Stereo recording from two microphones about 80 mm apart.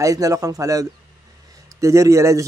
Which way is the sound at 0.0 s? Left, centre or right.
Right.